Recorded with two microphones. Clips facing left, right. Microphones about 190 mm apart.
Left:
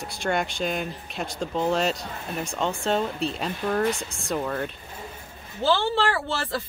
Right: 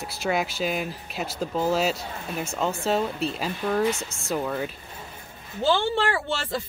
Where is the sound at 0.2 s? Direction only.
5° right (ahead or behind).